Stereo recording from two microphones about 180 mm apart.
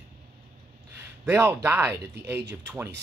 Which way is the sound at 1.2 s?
10° right (ahead or behind).